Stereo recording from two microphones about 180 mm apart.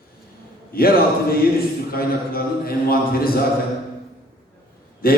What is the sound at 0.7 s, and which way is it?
A man's voice, 55° left (ahead or behind).